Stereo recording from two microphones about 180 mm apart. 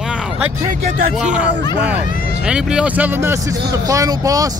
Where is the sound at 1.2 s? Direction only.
5° right (ahead or behind).